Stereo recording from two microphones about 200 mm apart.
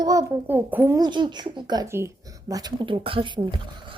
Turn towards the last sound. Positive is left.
turn(degrees=-25)  # may be behind; listen again after turning